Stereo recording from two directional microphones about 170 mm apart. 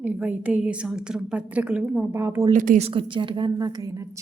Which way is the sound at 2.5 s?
50° right (ahead or behind).